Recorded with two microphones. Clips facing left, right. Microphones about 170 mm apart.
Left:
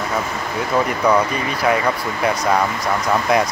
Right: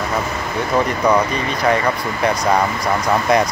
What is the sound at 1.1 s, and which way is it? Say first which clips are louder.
Speech: even; 10° right (ahead or behind).